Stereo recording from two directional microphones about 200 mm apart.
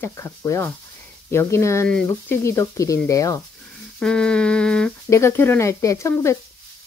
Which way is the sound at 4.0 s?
5° left (ahead or behind).